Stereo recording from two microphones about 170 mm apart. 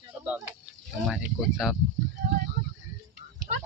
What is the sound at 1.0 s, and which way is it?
Speech, 5° right (ahead or behind).